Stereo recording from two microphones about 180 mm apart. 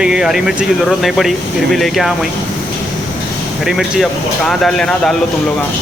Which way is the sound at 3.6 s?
Centre (ahead or behind).